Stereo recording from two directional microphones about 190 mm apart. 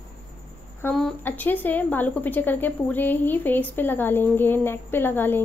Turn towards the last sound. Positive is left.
turn(degrees=10)  # may be behind; listen again after turning